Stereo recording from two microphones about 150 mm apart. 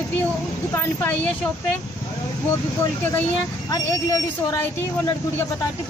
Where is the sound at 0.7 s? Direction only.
10° left (ahead or behind).